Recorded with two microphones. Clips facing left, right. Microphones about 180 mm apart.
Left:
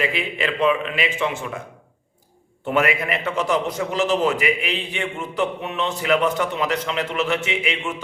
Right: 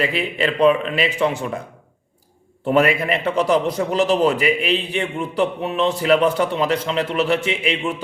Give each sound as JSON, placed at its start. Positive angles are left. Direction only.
{"t": 0.0, "sound": "a man's voice", "side_deg": -35}
{"t": 2.6, "sound": "a man's voice", "side_deg": -35}